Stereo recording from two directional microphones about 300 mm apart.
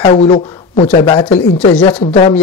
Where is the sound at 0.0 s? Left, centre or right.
Left.